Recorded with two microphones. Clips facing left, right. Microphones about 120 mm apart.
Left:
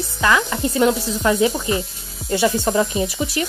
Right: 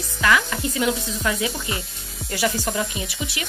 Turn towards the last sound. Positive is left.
turn(degrees=40)  # may be behind; listen again after turning